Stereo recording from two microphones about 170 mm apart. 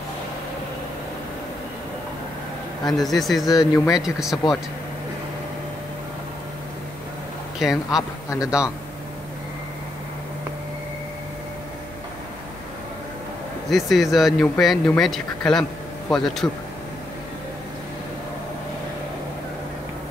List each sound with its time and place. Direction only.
2.8 s speech: centre (ahead or behind)
3.5 s speech: 20° left (ahead or behind)
4.0 s speech: centre (ahead or behind)
7.5 s speech: centre (ahead or behind)
13.7 s speech: centre (ahead or behind)